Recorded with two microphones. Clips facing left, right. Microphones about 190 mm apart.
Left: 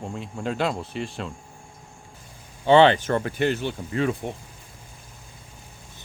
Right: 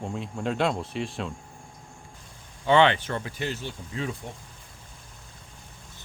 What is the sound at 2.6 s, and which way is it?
Speech, 35° left (ahead or behind).